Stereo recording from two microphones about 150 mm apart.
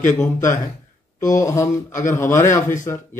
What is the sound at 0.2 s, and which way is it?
A man's voice, 20° left (ahead or behind).